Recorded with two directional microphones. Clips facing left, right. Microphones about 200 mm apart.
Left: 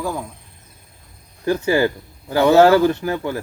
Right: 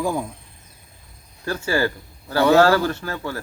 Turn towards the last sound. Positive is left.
turn(degrees=15)  # may be behind; listen again after turning